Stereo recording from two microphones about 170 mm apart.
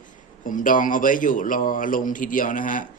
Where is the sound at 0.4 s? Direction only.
50° left (ahead or behind).